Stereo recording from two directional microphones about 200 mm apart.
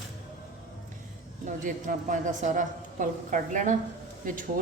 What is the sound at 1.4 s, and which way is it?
A woman's voice, 40° right (ahead or behind).